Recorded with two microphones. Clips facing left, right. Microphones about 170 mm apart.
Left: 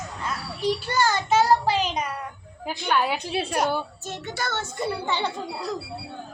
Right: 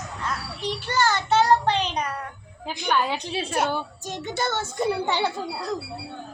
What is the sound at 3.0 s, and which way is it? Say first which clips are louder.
Speech: left 1 dB; 10° left (ahead or behind).